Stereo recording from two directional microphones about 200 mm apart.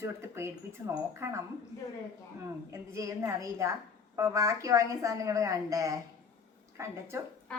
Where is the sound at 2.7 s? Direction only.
15° right (ahead or behind).